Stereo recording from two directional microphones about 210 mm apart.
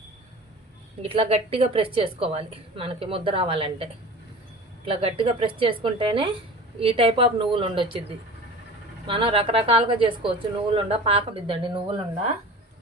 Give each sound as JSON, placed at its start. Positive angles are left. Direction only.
{"t": 1.0, "sound": "a woman's voice", "side_deg": -25}
{"t": 4.9, "sound": "a woman's voice", "side_deg": -25}
{"t": 9.0, "sound": "a woman's voice", "side_deg": -25}